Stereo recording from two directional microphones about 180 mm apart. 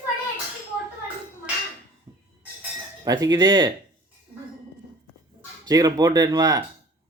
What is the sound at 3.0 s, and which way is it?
Speech, 20° right (ahead or behind).